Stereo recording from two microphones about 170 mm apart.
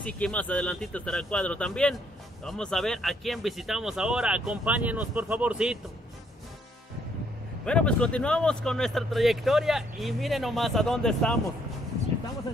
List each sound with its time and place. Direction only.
0.0 s speech: 5° left (ahead or behind)
7.6 s speech: 5° left (ahead or behind)